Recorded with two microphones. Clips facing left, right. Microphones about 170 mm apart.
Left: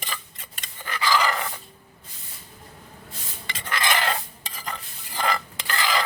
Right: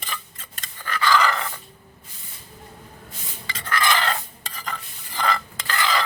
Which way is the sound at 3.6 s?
15° left (ahead or behind).